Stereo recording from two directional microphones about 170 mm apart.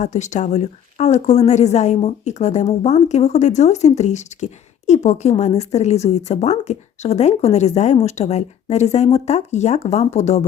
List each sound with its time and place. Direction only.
0.0 s a woman's voice: 45° left (ahead or behind)